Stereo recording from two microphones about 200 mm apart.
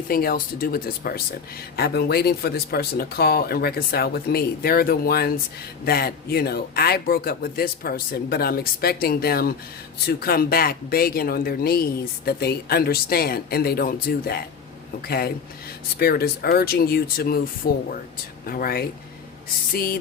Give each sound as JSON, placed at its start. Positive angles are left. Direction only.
{"t": 0.1, "sound": "speech", "side_deg": 50}